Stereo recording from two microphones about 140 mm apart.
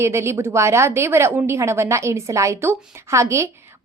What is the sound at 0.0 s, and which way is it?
A woman's voice, 20° right (ahead or behind).